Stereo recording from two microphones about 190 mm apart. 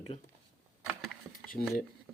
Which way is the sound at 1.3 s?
50° left (ahead or behind).